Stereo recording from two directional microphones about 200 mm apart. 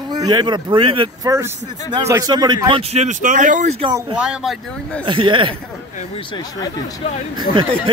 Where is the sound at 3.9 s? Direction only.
20° right (ahead or behind).